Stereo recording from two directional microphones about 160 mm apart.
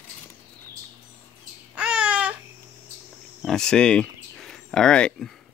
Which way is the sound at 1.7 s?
5° right (ahead or behind).